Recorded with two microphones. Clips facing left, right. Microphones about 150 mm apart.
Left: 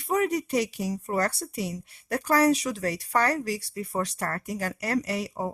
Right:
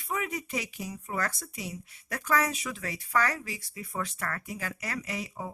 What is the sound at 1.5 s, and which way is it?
Speech, 65° left (ahead or behind).